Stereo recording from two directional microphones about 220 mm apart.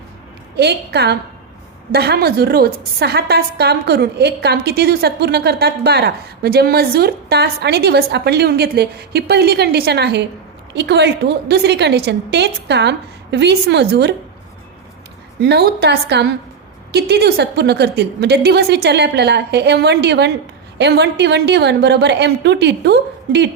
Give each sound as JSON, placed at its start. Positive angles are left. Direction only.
{"t": 0.5, "sound": "a woman's voice", "side_deg": -50}
{"t": 15.4, "sound": "a woman's voice", "side_deg": -50}